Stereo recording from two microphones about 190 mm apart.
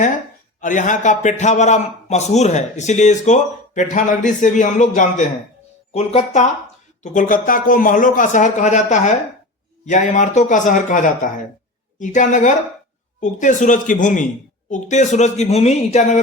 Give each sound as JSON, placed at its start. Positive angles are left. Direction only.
{"t": 0.6, "sound": "a man's voice", "side_deg": 40}